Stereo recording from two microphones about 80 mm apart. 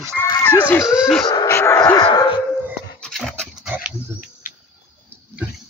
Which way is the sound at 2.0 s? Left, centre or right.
Left.